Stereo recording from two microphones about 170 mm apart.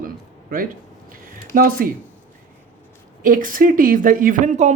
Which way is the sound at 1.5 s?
55° right (ahead or behind).